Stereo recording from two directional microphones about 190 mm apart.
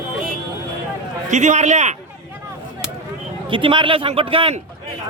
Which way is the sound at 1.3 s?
40° right (ahead or behind).